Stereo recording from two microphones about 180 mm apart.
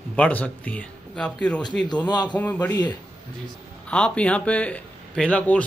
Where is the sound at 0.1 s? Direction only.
5° left (ahead or behind).